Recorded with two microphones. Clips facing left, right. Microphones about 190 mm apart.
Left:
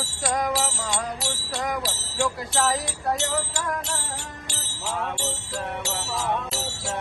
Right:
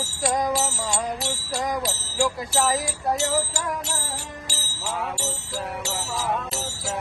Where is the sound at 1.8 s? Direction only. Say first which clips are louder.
Right 2 dB; centre (ahead or behind).